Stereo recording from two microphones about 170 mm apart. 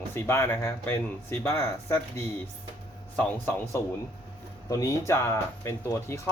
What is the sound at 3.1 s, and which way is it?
Speech, 10° left (ahead or behind).